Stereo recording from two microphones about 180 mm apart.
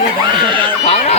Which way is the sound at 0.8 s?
35° left (ahead or behind).